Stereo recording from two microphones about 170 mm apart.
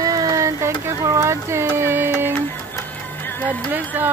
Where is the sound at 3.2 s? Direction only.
10° left (ahead or behind).